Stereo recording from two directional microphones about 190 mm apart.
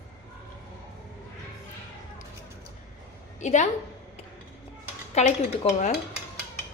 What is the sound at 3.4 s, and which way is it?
Speech, 40° left (ahead or behind).